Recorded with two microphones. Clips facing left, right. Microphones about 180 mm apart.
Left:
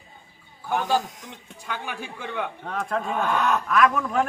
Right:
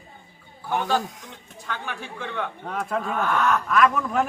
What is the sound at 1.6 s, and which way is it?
Speech, 10° left (ahead or behind).